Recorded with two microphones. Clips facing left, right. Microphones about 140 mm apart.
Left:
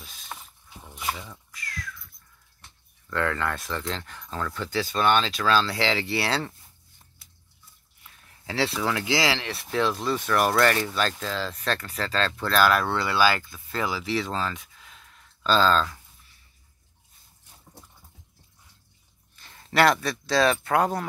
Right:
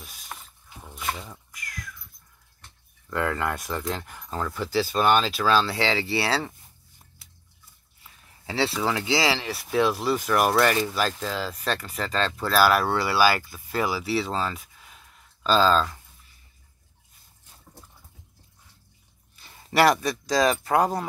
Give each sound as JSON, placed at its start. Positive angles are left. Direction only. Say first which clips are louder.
{"t": 1.3, "sound": "cat", "louder": "left 1 dB", "side_deg": -15}
{"t": 3.1, "sound": "speech", "louder": "right 1 dB", "side_deg": -10}
{"t": 8.0, "sound": "a sound", "louder": "right 1 dB", "side_deg": -5}
{"t": 9.0, "sound": "speech", "louder": "right 1 dB", "side_deg": -5}
{"t": 19.3, "sound": "speech", "louder": "right 1 dB", "side_deg": -10}